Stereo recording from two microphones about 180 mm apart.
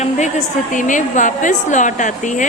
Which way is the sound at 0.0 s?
40° left (ahead or behind).